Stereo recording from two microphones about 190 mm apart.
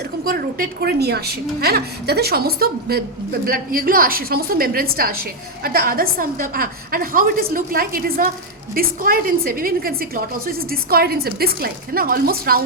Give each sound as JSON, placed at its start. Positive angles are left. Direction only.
{"t": 0.3, "sound": "a woman's voice", "side_deg": -55}